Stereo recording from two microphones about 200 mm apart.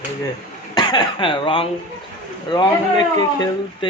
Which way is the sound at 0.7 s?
25° left (ahead or behind).